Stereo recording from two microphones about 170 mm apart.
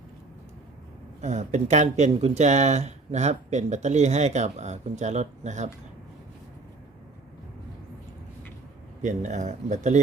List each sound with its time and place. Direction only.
1.2 s speech: 45° right (ahead or behind)
9.0 s speech: 45° right (ahead or behind)